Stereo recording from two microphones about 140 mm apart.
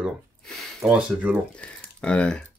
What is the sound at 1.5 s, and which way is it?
Speech, 5° left (ahead or behind).